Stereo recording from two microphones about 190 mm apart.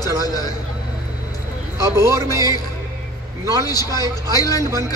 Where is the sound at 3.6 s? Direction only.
20° left (ahead or behind).